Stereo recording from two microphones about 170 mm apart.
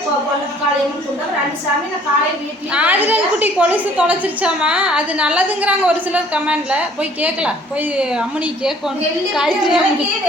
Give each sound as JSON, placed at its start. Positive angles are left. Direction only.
{"t": 2.7, "sound": "a woman's voice", "side_deg": -10}